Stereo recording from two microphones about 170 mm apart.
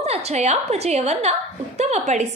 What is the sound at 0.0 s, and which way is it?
A woman's voice, 40° right (ahead or behind).